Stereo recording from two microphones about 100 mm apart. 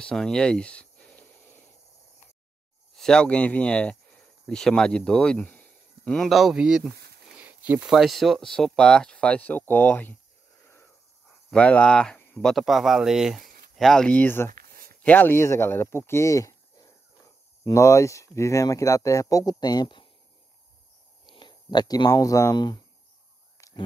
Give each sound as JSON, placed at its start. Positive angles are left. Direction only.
{"t": 0.0, "sound": "speech", "side_deg": 5}
{"t": 3.0, "sound": "speech", "side_deg": 10}
{"t": 5.5, "sound": "a sound", "side_deg": 15}
{"t": 6.1, "sound": "speech", "side_deg": 0}
{"t": 7.3, "sound": "a sound", "side_deg": -15}
{"t": 7.9, "sound": "speech", "side_deg": 0}
{"t": 10.6, "sound": "wheeze", "side_deg": 25}
{"t": 11.5, "sound": "speech", "side_deg": 10}
{"t": 14.2, "sound": "speech", "side_deg": 20}
{"t": 21.3, "sound": "speech", "side_deg": 50}
{"t": 23.6, "sound": "a sound", "side_deg": 35}